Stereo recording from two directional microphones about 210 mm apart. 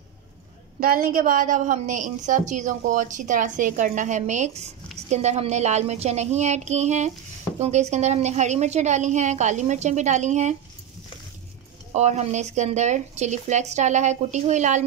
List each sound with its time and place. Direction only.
0.7 s a woman's voice: 45° right (ahead or behind)
11.9 s a woman's voice: 30° right (ahead or behind)